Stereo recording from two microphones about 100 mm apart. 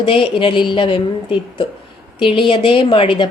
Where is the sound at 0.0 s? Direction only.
60° left (ahead or behind).